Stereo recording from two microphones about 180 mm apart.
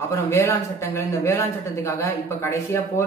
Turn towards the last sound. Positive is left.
turn(degrees=15)  # may be behind; listen again after turning